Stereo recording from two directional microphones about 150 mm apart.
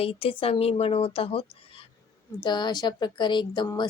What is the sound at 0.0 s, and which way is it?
Speech, 40° left (ahead or behind).